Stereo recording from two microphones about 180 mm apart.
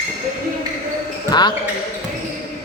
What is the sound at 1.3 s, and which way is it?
Speech, 25° left (ahead or behind).